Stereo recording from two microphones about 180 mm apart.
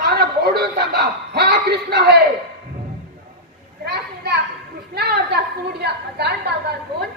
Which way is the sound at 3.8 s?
65° right (ahead or behind).